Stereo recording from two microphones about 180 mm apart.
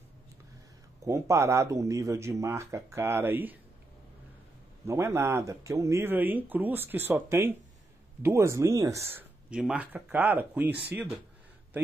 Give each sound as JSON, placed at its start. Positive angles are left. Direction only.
{"t": 1.0, "sound": "speech", "side_deg": -15}
{"t": 4.8, "sound": "speech", "side_deg": -15}
{"t": 9.5, "sound": "speech", "side_deg": -5}